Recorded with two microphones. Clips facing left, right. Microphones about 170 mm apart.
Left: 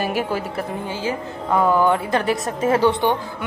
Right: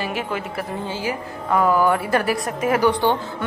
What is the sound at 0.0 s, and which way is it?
Speech, 40° left (ahead or behind).